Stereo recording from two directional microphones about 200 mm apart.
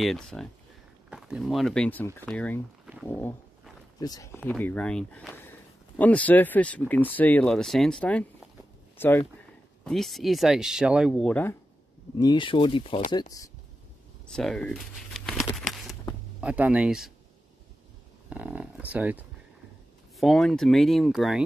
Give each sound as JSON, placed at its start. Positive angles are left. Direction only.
{"t": 0.0, "sound": "speech", "side_deg": 0}
{"t": 12.2, "sound": "speech", "side_deg": 20}
{"t": 14.2, "sound": "speech", "side_deg": 5}
{"t": 15.5, "sound": "a sound", "side_deg": 0}
{"t": 16.3, "sound": "speech", "side_deg": -5}
{"t": 18.3, "sound": "speech", "side_deg": -5}